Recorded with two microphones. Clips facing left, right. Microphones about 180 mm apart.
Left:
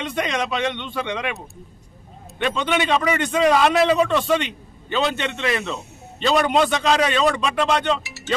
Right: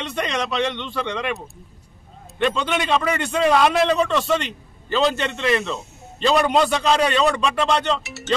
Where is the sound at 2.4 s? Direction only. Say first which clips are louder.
Even; centre (ahead or behind).